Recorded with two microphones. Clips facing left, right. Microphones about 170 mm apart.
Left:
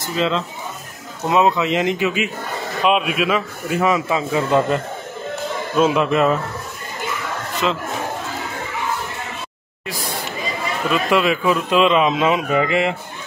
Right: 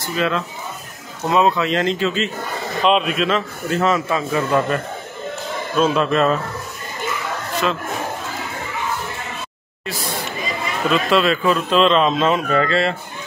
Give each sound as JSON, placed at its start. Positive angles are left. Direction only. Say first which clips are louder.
{"t": 0.1, "sound": "a man's voice", "louder": "left 1 dB", "side_deg": 20}
{"t": 10.9, "sound": "a man's voice", "louder": "right 1 dB", "side_deg": 15}